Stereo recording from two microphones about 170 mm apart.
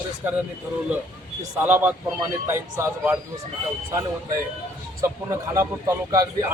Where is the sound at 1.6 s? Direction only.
10° right (ahead or behind).